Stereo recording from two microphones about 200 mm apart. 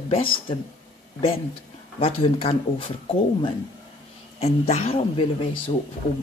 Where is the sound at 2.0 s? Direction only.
30° left (ahead or behind).